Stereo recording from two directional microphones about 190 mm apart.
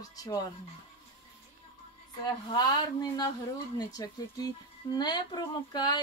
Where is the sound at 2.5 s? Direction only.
20° left (ahead or behind).